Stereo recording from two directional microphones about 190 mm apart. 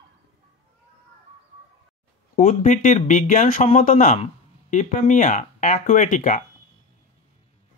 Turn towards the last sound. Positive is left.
turn(degrees=40)  # may be behind; listen again after turning